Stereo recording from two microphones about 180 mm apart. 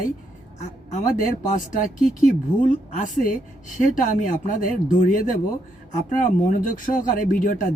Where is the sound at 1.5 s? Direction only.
50° left (ahead or behind).